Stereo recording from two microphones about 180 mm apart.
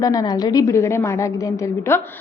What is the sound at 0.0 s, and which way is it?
A woman's voice, 20° left (ahead or behind).